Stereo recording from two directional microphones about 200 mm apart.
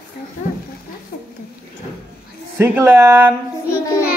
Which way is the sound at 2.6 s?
10° right (ahead or behind).